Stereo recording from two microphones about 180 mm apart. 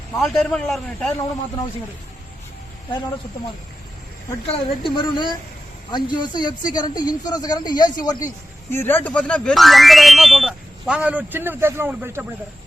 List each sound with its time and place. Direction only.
0.2 s speech: 5° left (ahead or behind)
4.8 s a woman's voice: 25° left (ahead or behind)
8.7 s speech: 10° left (ahead or behind); by 12.2 s 15° right (ahead or behind)